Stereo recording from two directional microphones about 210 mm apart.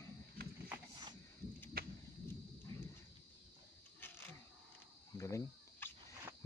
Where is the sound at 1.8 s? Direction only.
45° right (ahead or behind).